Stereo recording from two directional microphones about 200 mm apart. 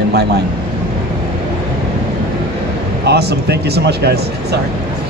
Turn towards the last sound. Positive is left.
turn(degrees=-55)  # may be behind; listen again after turning